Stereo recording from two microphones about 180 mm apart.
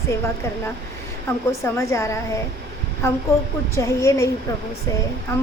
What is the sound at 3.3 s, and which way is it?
A woman's voice, 15° left (ahead or behind).